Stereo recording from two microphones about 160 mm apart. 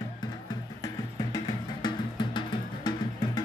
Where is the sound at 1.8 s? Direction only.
30° left (ahead or behind).